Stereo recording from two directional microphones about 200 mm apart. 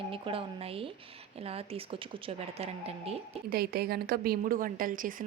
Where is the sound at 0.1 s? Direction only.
25° right (ahead or behind).